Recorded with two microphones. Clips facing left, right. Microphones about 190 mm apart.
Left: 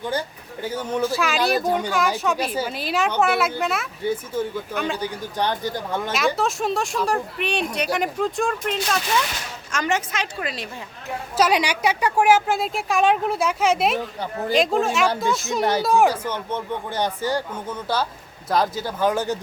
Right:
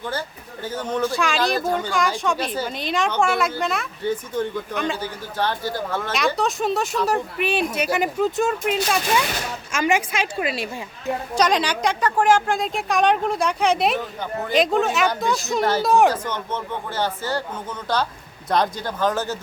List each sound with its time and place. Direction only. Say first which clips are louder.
0.0 s speech: left 2 dB; 15° left (ahead or behind)
1.5 s speech: left 1 dB; 15° left (ahead or behind)
1.9 s speech: even; 5° left (ahead or behind)
4.9 s speech: left 1 dB; 15° left (ahead or behind)
6.1 s a woman's voice: right 1 dB; centre (ahead or behind)
11.3 s speech: left 1 dB; 10° left (ahead or behind)
14.0 s speech: even; 35° left (ahead or behind)
14.5 s speech: right 1 dB; centre (ahead or behind)
16.0 s speech: right 1 dB; 10° left (ahead or behind)